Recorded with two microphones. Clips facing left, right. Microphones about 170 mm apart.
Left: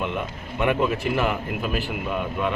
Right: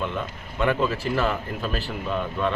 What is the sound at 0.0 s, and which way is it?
Speech, 15° left (ahead or behind).